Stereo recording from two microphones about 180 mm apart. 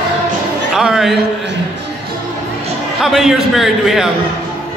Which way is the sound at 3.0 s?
Centre (ahead or behind).